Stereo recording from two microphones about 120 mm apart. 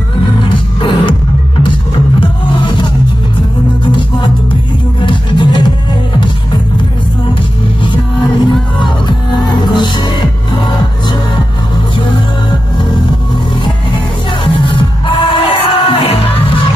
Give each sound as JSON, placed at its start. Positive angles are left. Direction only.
{"t": 0.7, "sound": "music", "side_deg": 40}
{"t": 2.1, "sound": "music", "side_deg": 40}
{"t": 7.8, "sound": "music", "side_deg": 40}
{"t": 9.7, "sound": "music", "side_deg": 40}
{"t": 14.4, "sound": "music", "side_deg": 40}